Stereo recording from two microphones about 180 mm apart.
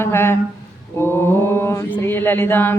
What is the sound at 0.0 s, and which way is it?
Chant, 15° left (ahead or behind).